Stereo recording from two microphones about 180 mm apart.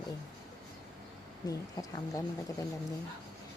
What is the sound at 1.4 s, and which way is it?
Speech, 20° left (ahead or behind).